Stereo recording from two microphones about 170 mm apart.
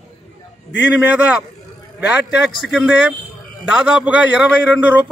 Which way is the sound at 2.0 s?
10° right (ahead or behind).